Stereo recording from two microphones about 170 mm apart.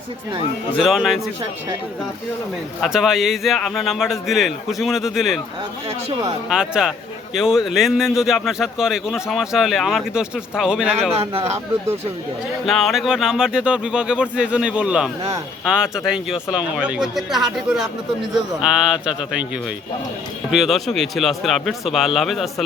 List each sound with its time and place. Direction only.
0.8 s speech: centre (ahead or behind)
2.8 s speech: centre (ahead or behind)
6.5 s speech: 5° right (ahead or behind)
11.2 s speech: 35° right (ahead or behind)
12.6 s speech: centre (ahead or behind)
18.6 s speech: 5° right (ahead or behind)
20.5 s speech: centre (ahead or behind)